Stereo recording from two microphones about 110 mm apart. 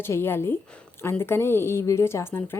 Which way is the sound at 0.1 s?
20° left (ahead or behind).